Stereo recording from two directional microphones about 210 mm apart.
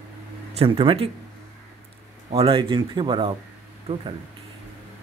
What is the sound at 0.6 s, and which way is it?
Speech, 25° right (ahead or behind).